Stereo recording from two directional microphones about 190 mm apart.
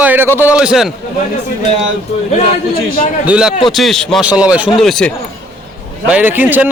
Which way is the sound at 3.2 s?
5° right (ahead or behind).